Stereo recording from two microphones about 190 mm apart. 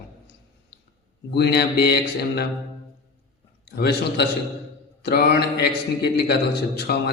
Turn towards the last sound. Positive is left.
turn(degrees=60)  # may be behind; listen again after turning